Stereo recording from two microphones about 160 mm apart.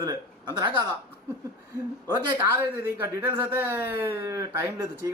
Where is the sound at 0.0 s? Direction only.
25° right (ahead or behind).